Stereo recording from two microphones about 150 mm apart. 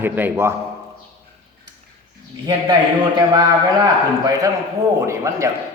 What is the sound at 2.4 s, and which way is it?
A man's voice, 30° right (ahead or behind).